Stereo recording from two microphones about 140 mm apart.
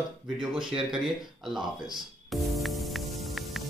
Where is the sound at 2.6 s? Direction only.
Centre (ahead or behind).